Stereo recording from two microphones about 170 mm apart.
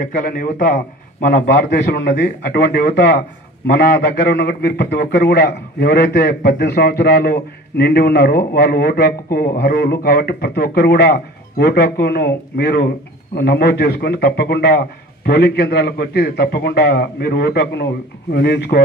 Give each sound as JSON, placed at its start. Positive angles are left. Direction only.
{"t": 0.0, "sound": "speech", "side_deg": 55}
{"t": 1.5, "sound": "a man's voice", "side_deg": 80}